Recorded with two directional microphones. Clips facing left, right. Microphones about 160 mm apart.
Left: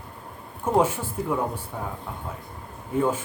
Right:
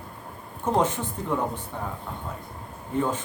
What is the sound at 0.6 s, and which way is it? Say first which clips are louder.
Speech: left 2 dB; 10° left (ahead or behind).